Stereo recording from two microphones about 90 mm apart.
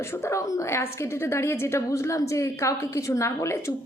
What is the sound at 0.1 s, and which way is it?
A woman's voice, 30° left (ahead or behind).